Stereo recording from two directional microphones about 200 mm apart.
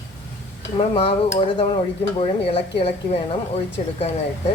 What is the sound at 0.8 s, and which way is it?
Speech, 30° left (ahead or behind).